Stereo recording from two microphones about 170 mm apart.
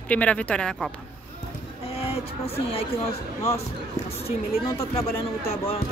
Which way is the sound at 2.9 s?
15° left (ahead or behind).